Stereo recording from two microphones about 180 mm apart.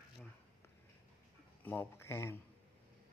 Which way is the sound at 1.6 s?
10° left (ahead or behind).